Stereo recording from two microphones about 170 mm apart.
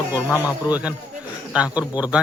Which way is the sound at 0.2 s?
15° left (ahead or behind).